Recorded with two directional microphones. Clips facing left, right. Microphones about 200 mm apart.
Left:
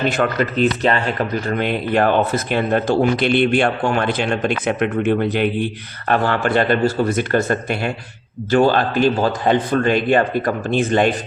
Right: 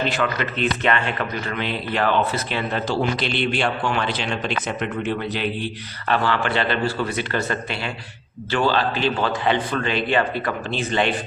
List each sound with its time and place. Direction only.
0.1 s speech: 45° left (ahead or behind)